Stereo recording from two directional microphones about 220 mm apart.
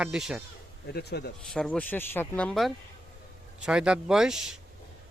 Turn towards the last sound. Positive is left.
turn(degrees=0)  # may be behind; listen again after turning